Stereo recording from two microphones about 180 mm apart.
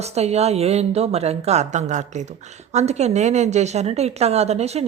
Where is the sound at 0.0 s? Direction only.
35° right (ahead or behind).